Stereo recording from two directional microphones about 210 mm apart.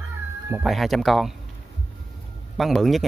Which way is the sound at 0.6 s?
Centre (ahead or behind).